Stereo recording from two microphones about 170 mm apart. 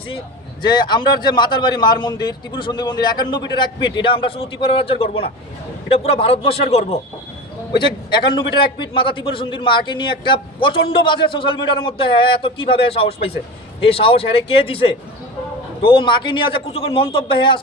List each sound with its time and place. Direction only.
0.7 s a man's voice: 25° left (ahead or behind)